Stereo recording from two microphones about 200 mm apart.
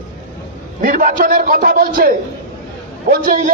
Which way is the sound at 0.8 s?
45° right (ahead or behind).